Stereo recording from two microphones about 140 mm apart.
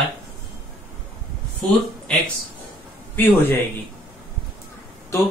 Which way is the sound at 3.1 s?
15° left (ahead or behind).